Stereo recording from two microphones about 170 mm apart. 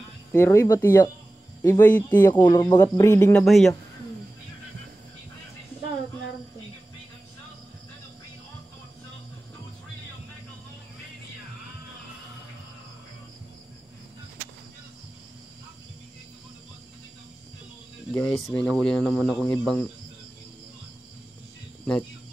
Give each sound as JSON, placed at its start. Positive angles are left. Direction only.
{"t": 0.3, "sound": "speech", "side_deg": 15}
{"t": 2.2, "sound": "speech", "side_deg": 25}
{"t": 3.3, "sound": "speech", "side_deg": 0}
{"t": 18.1, "sound": "speech", "side_deg": 5}